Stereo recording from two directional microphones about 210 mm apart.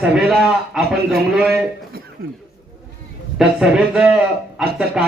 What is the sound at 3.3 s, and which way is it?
A man's voice, 5° right (ahead or behind).